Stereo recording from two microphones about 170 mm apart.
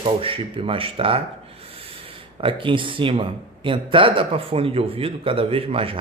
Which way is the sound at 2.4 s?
30° right (ahead or behind).